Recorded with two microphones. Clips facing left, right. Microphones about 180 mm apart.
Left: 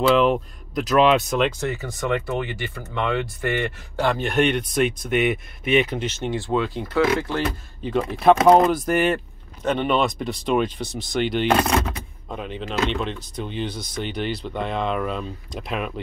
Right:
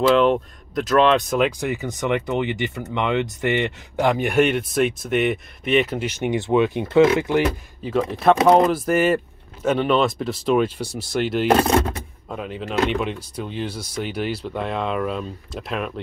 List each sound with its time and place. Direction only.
0.1 s speech: centre (ahead or behind)
1.6 s speech: 15° right (ahead or behind)
7.8 s speech: centre (ahead or behind)